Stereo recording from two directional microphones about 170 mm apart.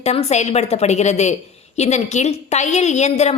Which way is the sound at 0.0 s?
40° left (ahead or behind).